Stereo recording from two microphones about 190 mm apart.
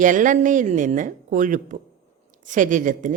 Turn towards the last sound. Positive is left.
turn(degrees=-45)  # may be behind; listen again after turning